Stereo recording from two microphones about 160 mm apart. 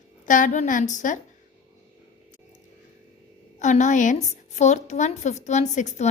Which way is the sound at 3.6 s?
50° left (ahead or behind).